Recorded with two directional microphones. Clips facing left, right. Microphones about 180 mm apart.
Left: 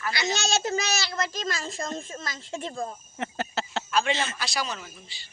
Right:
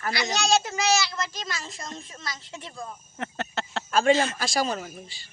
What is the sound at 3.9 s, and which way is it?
Speech, 45° right (ahead or behind).